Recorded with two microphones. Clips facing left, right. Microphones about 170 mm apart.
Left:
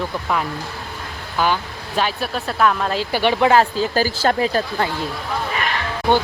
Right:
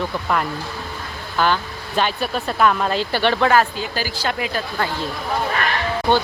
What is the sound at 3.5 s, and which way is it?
Speech, 25° left (ahead or behind).